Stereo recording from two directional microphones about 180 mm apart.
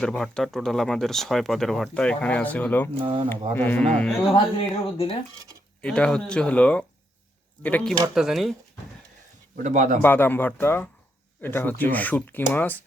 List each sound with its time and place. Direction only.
0.0 s speech: 5° left (ahead or behind)
3.0 s speech: 30° right (ahead or behind)
3.5 s speech: 10° left (ahead or behind)
4.5 s speech: 30° left (ahead or behind)
5.8 s speech: 5° left (ahead or behind)
9.6 s a man's voice: 45° right (ahead or behind)
10.0 s speech: 10° left (ahead or behind)